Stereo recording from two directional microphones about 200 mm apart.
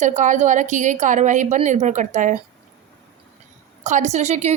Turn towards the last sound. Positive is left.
turn(degrees=-35)  # may be behind; listen again after turning